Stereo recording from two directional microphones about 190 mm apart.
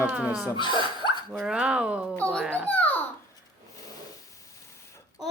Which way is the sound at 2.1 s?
5° left (ahead or behind).